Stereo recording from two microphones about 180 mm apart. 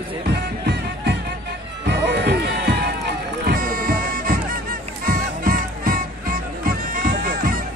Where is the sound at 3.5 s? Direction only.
50° right (ahead or behind).